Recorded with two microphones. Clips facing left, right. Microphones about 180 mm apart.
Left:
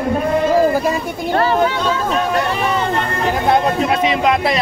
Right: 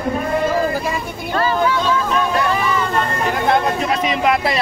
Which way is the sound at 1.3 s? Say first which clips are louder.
Left 3 dB; 55° left (ahead or behind).